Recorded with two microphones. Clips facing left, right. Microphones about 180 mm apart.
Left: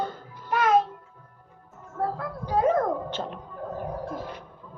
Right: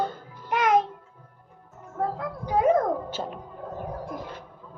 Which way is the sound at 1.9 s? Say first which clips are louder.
Even; 15° right (ahead or behind).